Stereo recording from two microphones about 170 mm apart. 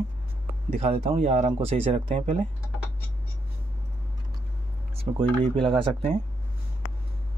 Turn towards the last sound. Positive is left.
turn(degrees=-35)  # may be behind; listen again after turning